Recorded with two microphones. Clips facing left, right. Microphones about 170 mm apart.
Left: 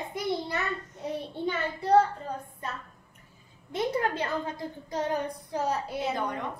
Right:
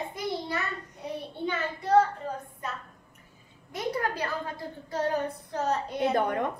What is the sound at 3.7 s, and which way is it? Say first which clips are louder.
Speech: left 2 dB; 25° left (ahead or behind).